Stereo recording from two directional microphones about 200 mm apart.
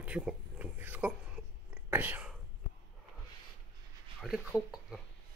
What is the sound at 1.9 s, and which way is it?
Whispering, 10° right (ahead or behind).